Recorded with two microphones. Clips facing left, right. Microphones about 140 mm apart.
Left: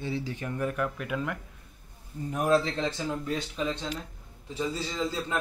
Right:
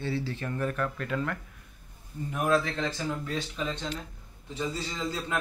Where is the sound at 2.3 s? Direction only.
35° left (ahead or behind).